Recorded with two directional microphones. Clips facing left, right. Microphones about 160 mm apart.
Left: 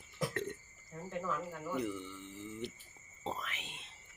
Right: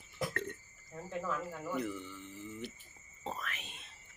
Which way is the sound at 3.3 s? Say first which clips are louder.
Left 1 dB; 20° left (ahead or behind).